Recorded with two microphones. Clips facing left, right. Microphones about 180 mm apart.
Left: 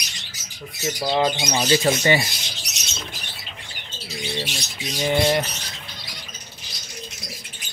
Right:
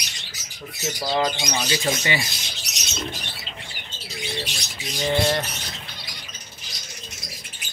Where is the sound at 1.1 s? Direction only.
20° left (ahead or behind).